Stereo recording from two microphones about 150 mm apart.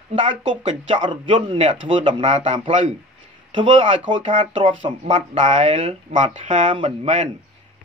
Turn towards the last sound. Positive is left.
turn(degrees=-45)  # may be behind; listen again after turning